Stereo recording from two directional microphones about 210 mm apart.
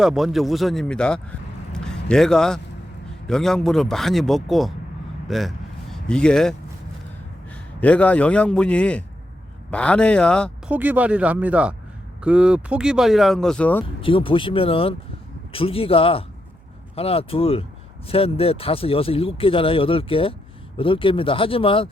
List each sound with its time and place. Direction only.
0.0 s a man's voice: centre (ahead or behind)
10.7 s speech: 10° right (ahead or behind)
14.0 s speech: 25° left (ahead or behind)